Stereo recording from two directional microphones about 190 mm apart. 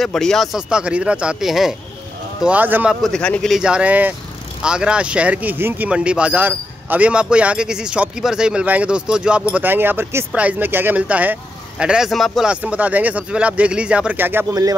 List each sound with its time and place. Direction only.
0.0 s speech: centre (ahead or behind)
14.5 s music: 20° right (ahead or behind)